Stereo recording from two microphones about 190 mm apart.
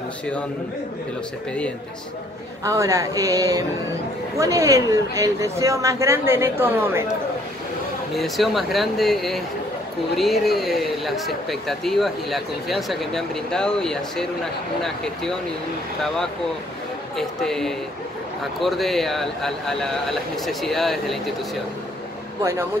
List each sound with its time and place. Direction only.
2.6 s a woman's voice: 15° right (ahead or behind)
8.1 s speech: centre (ahead or behind)
17.4 s speech: centre (ahead or behind)
22.4 s a woman's voice: 15° right (ahead or behind)